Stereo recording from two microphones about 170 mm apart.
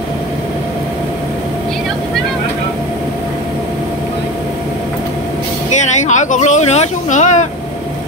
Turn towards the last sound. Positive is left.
turn(degrees=45)  # may be behind; listen again after turning